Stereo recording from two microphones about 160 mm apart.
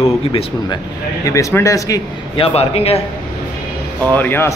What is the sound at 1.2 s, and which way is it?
Speech, 20° left (ahead or behind).